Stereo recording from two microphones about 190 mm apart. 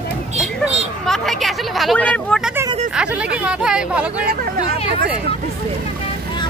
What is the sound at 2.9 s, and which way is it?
Speech, 5° right (ahead or behind).